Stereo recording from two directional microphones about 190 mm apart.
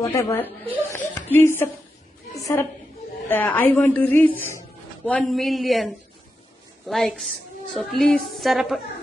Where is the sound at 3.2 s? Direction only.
10° left (ahead or behind).